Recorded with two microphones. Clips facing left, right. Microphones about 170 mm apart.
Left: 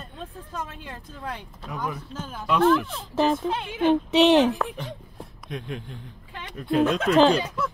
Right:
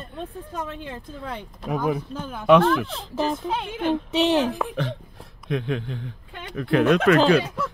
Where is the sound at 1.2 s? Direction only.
55° right (ahead or behind).